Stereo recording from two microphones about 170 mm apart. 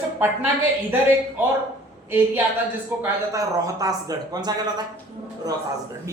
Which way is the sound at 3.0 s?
20° right (ahead or behind).